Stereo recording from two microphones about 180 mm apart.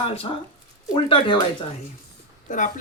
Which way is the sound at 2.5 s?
45° left (ahead or behind).